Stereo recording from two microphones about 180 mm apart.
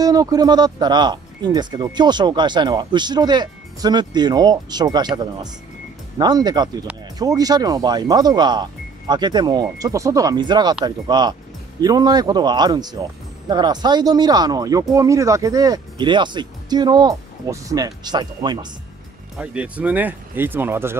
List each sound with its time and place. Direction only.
0.0 s speech: 20° right (ahead or behind)
19.3 s speech: 5° right (ahead or behind)